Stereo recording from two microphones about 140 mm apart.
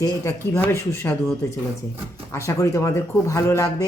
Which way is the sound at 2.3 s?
20° left (ahead or behind).